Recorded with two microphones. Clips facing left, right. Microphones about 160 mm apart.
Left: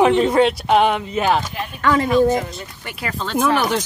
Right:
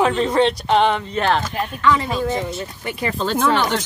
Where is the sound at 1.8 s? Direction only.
50° left (ahead or behind).